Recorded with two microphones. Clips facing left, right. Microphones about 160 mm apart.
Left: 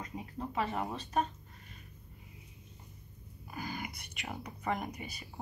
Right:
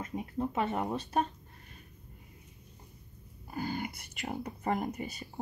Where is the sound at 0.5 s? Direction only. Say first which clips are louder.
Right 1 dB; 40° right (ahead or behind).